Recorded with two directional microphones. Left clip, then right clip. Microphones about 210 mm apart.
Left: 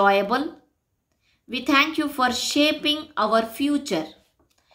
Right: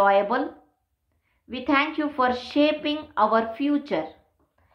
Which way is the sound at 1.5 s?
20° left (ahead or behind).